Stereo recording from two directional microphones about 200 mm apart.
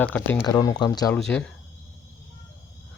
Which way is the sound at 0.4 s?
20° left (ahead or behind).